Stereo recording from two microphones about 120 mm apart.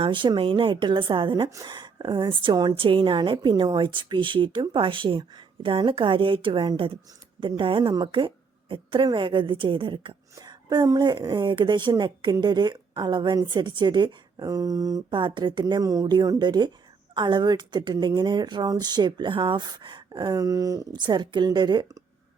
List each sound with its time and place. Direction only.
0.0 s a woman's voice: 40° right (ahead or behind)
1.5 s a woman's voice: 25° right (ahead or behind)
15.1 s a woman's voice: 40° right (ahead or behind)
15.6 s a woman's voice: 30° right (ahead or behind)